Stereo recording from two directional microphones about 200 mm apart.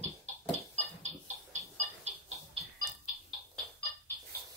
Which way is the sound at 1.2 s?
35° right (ahead or behind).